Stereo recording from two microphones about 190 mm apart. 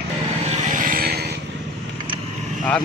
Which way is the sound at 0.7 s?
50° right (ahead or behind).